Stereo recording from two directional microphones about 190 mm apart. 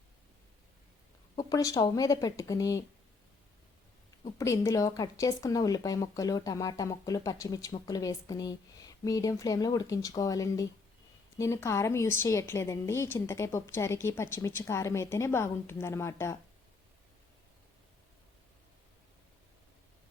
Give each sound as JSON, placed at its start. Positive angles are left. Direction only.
{"t": 1.4, "sound": "a woman's voice", "side_deg": 20}
{"t": 4.4, "sound": "a woman's voice", "side_deg": 15}